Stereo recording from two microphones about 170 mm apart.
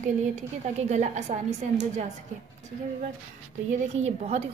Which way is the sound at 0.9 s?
45° right (ahead or behind).